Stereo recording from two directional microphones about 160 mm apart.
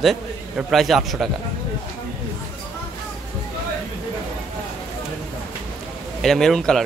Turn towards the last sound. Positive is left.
turn(degrees=0)  # may be behind; listen again after turning